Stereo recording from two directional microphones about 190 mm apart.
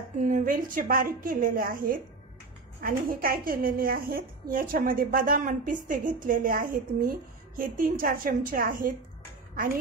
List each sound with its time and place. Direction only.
0.2 s a woman's voice: 45° right (ahead or behind)